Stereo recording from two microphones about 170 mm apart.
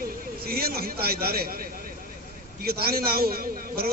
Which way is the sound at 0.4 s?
60° right (ahead or behind).